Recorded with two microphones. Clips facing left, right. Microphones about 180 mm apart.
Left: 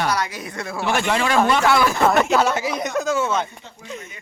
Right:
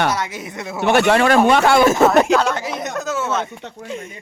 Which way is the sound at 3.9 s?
30° right (ahead or behind).